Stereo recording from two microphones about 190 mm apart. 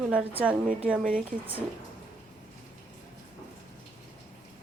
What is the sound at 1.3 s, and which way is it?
Speech, 45° right (ahead or behind).